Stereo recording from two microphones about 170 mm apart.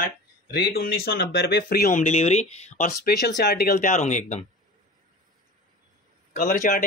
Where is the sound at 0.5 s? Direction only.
75° left (ahead or behind).